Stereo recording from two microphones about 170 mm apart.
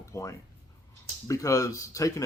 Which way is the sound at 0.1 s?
20° left (ahead or behind).